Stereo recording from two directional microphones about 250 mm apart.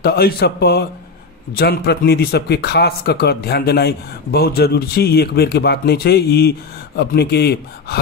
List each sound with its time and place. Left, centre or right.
0.0 s a man's voice: left